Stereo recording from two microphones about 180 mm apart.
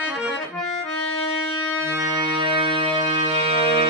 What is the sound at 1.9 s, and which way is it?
Music, 20° right (ahead or behind).